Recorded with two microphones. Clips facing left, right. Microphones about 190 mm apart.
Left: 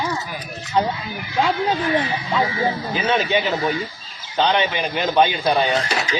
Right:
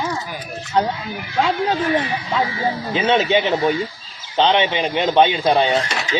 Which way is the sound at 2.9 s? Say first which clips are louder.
Right 5 dB; 25° right (ahead or behind).